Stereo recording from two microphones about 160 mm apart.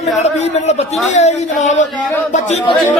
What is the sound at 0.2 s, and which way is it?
A man's voice, 45° left (ahead or behind).